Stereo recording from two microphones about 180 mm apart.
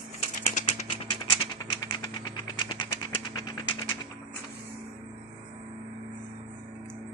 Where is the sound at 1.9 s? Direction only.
25° left (ahead or behind).